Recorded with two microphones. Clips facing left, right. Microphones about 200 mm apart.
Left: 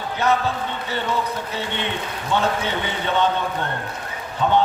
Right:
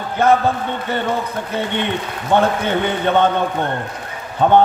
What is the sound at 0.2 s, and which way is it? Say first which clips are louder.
A man's voice: right 6 dB; 50° right (ahead or behind).